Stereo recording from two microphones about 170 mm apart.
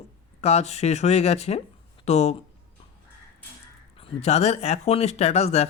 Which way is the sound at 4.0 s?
35° left (ahead or behind).